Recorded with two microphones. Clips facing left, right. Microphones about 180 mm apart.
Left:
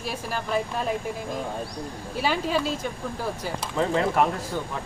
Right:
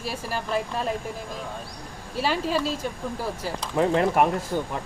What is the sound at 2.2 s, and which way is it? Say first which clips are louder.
Speech: even; centre (ahead or behind).